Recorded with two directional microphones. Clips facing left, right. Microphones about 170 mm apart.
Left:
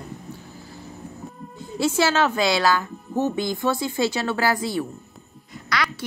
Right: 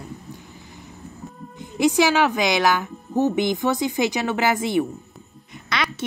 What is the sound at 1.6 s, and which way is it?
A woman's voice, 15° right (ahead or behind).